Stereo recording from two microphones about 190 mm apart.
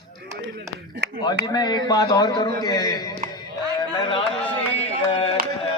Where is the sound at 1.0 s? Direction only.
65° right (ahead or behind).